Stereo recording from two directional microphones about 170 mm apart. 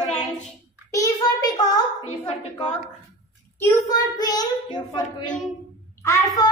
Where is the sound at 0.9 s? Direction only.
20° left (ahead or behind).